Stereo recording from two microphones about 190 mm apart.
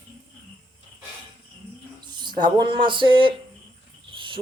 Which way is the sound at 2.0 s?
25° right (ahead or behind).